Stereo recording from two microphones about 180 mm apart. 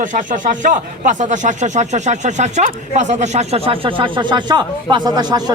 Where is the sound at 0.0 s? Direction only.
45° right (ahead or behind).